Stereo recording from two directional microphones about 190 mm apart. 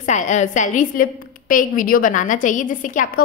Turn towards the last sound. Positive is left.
turn(degrees=45)  # may be behind; listen again after turning